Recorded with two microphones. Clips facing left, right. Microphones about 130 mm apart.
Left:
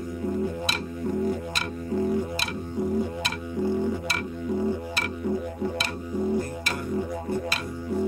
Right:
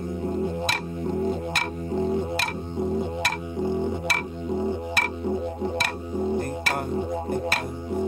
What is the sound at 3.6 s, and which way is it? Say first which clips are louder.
Music: even; 20° right (ahead or behind).